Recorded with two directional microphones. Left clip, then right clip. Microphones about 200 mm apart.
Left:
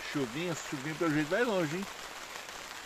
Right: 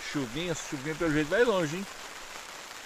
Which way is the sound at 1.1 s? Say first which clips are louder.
Right 6 dB; 60° right (ahead or behind).